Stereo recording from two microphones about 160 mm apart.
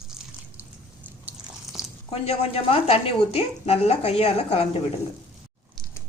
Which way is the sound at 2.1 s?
40° left (ahead or behind).